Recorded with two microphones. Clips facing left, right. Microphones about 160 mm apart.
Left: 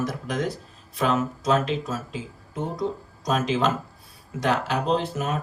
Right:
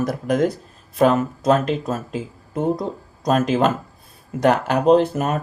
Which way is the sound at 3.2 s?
50° right (ahead or behind).